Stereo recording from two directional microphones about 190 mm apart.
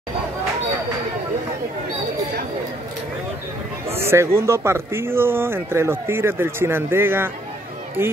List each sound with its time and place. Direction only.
3.9 s speech: 10° right (ahead or behind)